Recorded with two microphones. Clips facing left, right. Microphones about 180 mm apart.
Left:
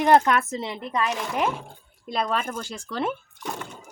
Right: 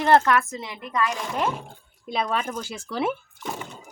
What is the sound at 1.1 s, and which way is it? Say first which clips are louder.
Speech: left 1 dB; centre (ahead or behind).